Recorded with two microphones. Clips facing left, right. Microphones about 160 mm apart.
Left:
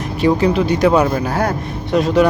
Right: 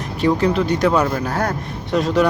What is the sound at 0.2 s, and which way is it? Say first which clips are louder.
Speech: left 2 dB; 5° left (ahead or behind).